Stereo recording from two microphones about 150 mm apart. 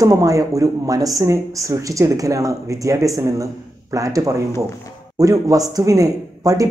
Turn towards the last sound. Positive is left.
turn(degrees=-25)  # may be behind; listen again after turning